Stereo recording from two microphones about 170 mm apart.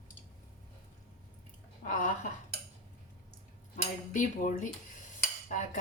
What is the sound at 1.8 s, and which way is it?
Speech, 50° left (ahead or behind).